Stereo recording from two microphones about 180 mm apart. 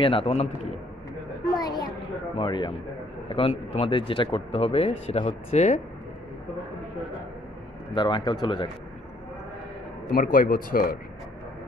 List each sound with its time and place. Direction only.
0.0 s speech: 30° left (ahead or behind)
1.6 s a sound: 20° left (ahead or behind)
2.3 s speech: 25° left (ahead or behind)
7.9 s speech: 25° left (ahead or behind)
10.0 s speech: 50° left (ahead or behind)